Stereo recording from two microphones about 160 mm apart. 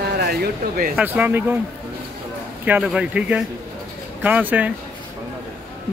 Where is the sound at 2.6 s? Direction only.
10° right (ahead or behind).